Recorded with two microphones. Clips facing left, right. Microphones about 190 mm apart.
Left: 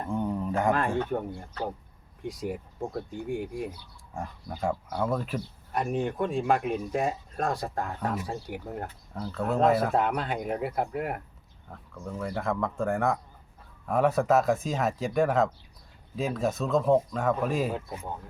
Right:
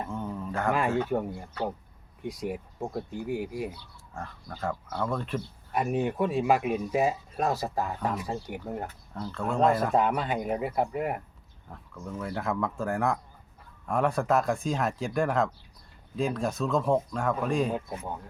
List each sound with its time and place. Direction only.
0.1 s a sound: 15° left (ahead or behind)
0.7 s speech: 10° right (ahead or behind)
4.1 s speech: 15° left (ahead or behind)
5.7 s speech: 5° right (ahead or behind)